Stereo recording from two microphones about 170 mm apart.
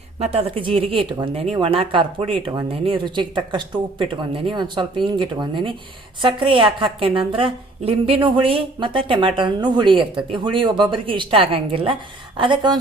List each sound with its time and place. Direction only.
0.2 s a woman's voice: 35° right (ahead or behind)